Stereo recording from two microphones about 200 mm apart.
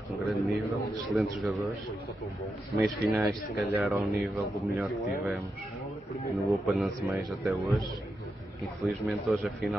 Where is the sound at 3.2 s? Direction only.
10° right (ahead or behind).